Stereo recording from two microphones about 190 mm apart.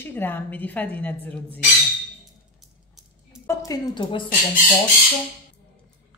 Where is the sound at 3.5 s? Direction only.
20° left (ahead or behind).